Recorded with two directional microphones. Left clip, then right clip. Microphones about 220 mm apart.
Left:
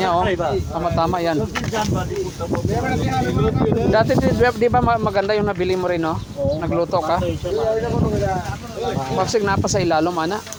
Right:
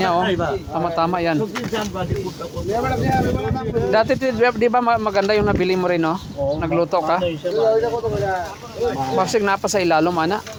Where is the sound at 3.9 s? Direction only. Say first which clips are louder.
Right 1 dB; 10° right (ahead or behind).